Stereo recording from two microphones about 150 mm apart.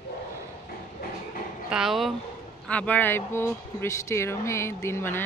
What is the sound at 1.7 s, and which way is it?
Speech, centre (ahead or behind).